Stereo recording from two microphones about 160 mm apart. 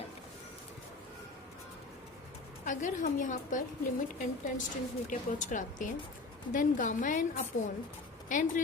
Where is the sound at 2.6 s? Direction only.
50° left (ahead or behind).